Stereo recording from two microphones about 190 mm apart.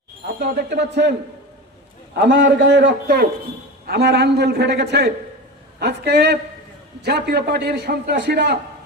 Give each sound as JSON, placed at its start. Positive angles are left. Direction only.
{"t": 0.3, "sound": "a man's voice", "side_deg": -60}
{"t": 2.2, "sound": "a man's voice", "side_deg": -65}